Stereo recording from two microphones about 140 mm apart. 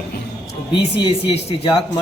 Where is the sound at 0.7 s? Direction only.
40° left (ahead or behind).